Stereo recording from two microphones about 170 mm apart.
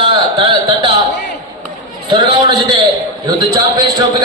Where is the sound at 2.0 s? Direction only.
30° right (ahead or behind).